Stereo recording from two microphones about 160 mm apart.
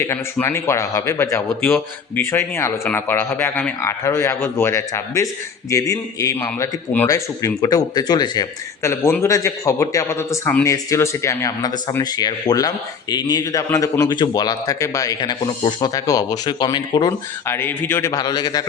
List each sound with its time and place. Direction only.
0.0 s a man's voice: 15° left (ahead or behind)